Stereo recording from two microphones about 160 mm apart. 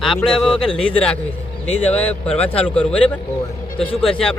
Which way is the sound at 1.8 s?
10° left (ahead or behind).